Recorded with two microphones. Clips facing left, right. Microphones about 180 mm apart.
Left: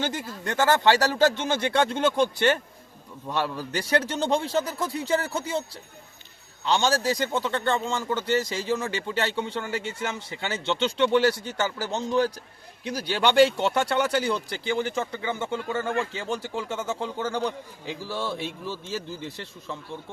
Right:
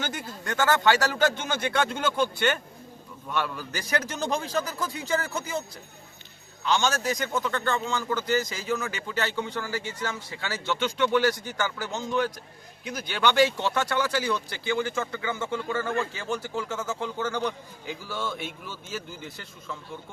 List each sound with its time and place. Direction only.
0.0 s a man's voice: 30° left (ahead or behind)
6.7 s a man's voice: 30° left (ahead or behind)